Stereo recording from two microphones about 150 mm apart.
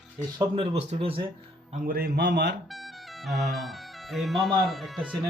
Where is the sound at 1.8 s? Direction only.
90° right.